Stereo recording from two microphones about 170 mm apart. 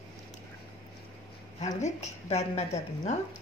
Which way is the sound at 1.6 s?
45° left (ahead or behind).